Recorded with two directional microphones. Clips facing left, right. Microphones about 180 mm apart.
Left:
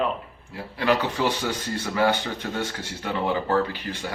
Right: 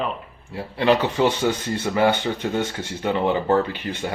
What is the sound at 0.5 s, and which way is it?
Speech, 25° right (ahead or behind).